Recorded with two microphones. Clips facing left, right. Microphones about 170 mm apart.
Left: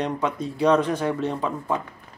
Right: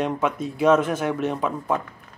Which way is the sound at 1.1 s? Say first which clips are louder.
Right 1 dB; 15° right (ahead or behind).